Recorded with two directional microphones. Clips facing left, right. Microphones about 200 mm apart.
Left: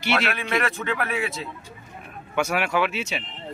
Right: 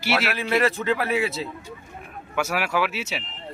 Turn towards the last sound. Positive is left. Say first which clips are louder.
# left 1 dB
turn(degrees=-5)  # may be behind; listen again after turning